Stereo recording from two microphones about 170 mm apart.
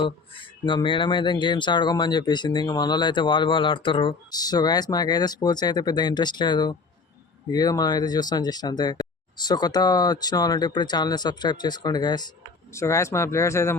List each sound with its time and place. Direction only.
0.0 s speech: 30° left (ahead or behind)